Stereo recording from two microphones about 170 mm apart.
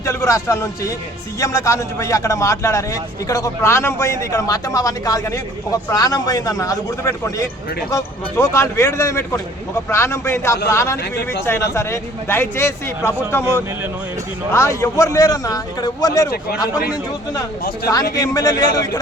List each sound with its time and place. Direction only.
0.0 s a man's voice: 15° left (ahead or behind)
14.5 s a man's voice: 15° left (ahead or behind)
18.1 s a man's voice: 20° left (ahead or behind)